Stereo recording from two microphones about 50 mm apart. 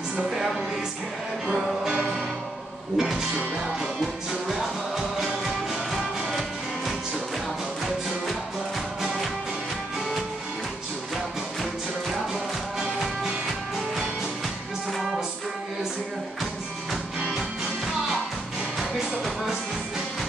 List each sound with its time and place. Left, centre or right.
1.5 s music: centre
3.0 s music: centre
18.8 s music: centre